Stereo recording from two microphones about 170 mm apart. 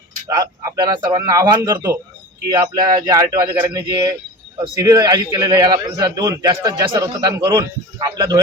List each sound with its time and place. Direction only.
0.3 s a man's voice: 25° right (ahead or behind)